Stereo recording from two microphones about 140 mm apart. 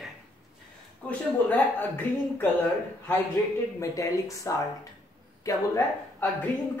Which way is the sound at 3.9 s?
25° left (ahead or behind).